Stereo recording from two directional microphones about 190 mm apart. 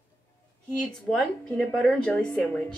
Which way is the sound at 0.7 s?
5° left (ahead or behind).